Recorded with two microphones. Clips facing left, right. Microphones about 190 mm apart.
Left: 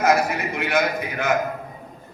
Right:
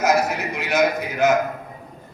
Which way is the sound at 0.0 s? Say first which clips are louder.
Even; 55° left (ahead or behind).